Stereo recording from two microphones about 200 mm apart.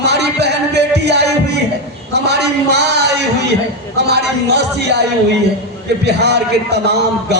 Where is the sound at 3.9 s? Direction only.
55° right (ahead or behind).